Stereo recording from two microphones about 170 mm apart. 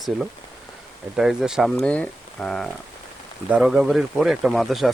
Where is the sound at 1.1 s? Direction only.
Centre (ahead or behind).